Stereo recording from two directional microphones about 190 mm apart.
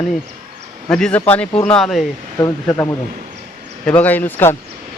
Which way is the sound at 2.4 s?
15° left (ahead or behind).